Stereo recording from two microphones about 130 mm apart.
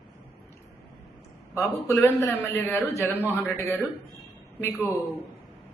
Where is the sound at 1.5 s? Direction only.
20° left (ahead or behind).